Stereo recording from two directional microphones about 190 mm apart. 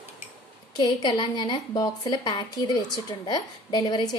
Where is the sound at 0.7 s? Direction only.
25° left (ahead or behind).